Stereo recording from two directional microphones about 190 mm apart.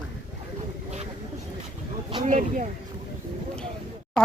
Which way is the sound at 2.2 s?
40° right (ahead or behind).